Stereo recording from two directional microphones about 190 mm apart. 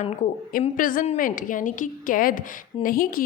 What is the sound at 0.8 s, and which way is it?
A woman's voice, 45° left (ahead or behind).